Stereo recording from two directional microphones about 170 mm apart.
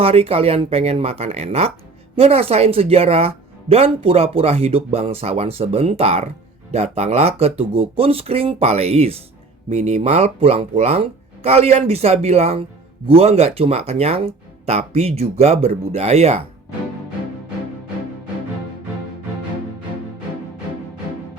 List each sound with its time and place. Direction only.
0.0 s speech: 35° right (ahead or behind)